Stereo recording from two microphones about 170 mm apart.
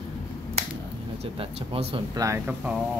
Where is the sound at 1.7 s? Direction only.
35° right (ahead or behind).